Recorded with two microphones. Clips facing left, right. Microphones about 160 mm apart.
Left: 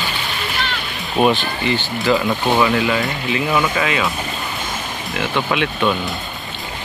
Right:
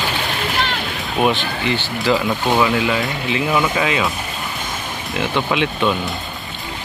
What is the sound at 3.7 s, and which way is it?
Speech, 20° right (ahead or behind).